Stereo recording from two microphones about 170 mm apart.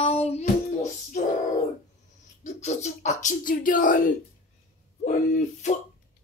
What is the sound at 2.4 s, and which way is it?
Speech, 40° left (ahead or behind).